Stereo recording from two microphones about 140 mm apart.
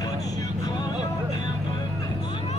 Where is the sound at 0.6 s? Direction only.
30° left (ahead or behind).